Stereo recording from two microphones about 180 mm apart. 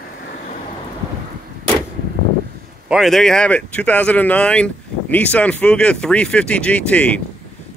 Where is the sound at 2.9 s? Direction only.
Centre (ahead or behind).